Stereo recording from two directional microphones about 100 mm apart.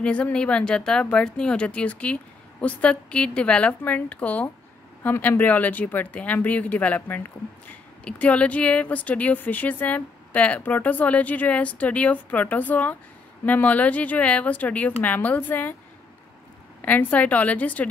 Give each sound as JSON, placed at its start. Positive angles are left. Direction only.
{"t": 0.0, "sound": "speech", "side_deg": 10}
{"t": 16.8, "sound": "speech", "side_deg": 15}